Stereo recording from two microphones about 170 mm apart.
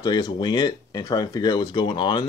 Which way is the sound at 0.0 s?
25° left (ahead or behind).